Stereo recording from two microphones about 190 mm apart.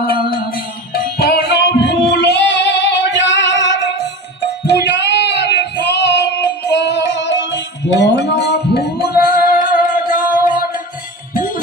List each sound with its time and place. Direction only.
0.0 s music: 50° left (ahead or behind)
9.9 s music: 45° left (ahead or behind)